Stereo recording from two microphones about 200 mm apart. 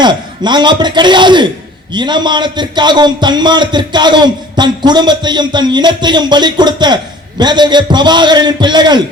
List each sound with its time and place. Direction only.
0.0 s a man's voice: 20° right (ahead or behind)